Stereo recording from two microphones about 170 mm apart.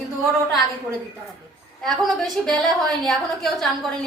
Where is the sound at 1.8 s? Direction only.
Centre (ahead or behind).